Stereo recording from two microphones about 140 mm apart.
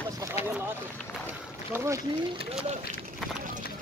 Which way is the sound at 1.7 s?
20° right (ahead or behind).